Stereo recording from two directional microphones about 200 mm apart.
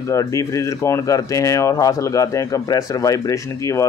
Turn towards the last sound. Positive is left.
turn(degrees=15)  # may be behind; listen again after turning